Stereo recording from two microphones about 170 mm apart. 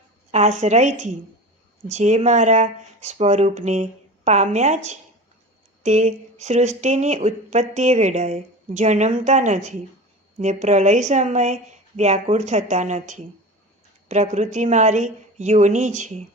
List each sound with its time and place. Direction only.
0.3 s speech: 40° right (ahead or behind)